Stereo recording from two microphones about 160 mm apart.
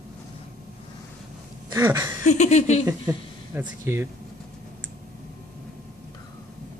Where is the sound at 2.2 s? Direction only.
45° left (ahead or behind).